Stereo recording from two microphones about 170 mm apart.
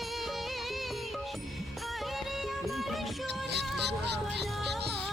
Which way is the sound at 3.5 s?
80° right.